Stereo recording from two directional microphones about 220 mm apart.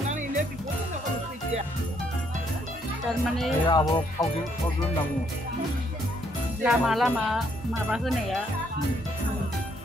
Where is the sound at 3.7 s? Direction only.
20° left (ahead or behind).